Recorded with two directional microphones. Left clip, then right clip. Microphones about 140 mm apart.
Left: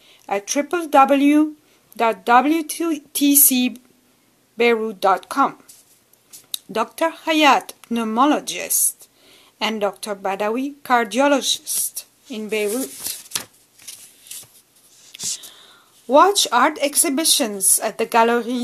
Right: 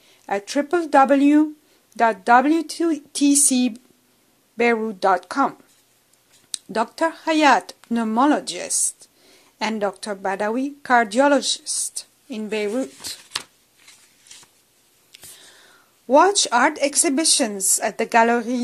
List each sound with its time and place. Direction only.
0.3 s speech: 35° right (ahead or behind)
6.7 s speech: 35° right (ahead or behind)
15.1 s speech: 40° right (ahead or behind)